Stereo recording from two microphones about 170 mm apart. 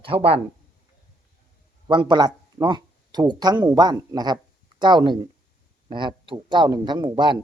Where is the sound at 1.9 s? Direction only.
25° right (ahead or behind).